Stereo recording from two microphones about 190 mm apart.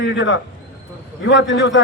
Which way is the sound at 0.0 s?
70° left (ahead or behind).